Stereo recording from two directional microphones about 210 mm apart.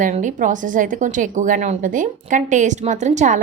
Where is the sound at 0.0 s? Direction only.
35° right (ahead or behind).